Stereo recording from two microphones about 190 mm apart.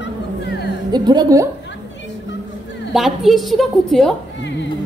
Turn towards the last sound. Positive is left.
turn(degrees=0)  # may be behind; listen again after turning